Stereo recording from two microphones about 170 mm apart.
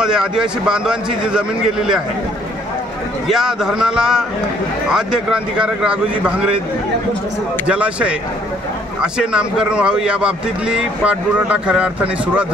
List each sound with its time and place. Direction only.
0.0 s a man's voice: 5° right (ahead or behind)
3.3 s a man's voice: 5° right (ahead or behind)
7.6 s a man's voice: 5° right (ahead or behind)